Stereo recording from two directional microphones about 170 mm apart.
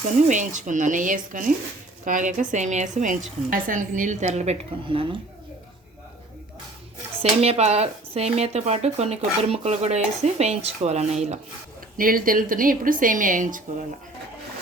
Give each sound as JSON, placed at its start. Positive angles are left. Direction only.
{"t": 0.0, "sound": "a woman's voice", "side_deg": -45}
{"t": 7.2, "sound": "speech", "side_deg": -35}
{"t": 11.9, "sound": "a woman's voice", "side_deg": -55}